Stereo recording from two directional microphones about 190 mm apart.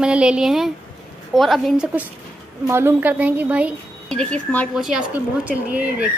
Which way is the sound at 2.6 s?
15° right (ahead or behind).